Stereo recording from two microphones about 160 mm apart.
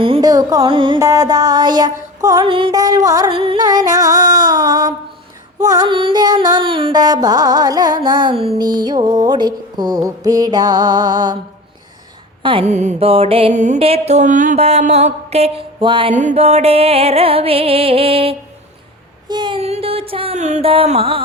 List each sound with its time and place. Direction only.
0.0 s music: 30° right (ahead or behind)
0.9 s female singing: 20° right (ahead or behind)
3.2 s a sound: 35° right (ahead or behind)
5.5 s female singing: 25° right (ahead or behind)
12.4 s speech: 30° right (ahead or behind)
12.6 s mantra: 45° right (ahead or behind)
16.1 s mantra: 45° right (ahead or behind)
19.3 s child singing: 30° right (ahead or behind)
19.6 s music: 40° right (ahead or behind)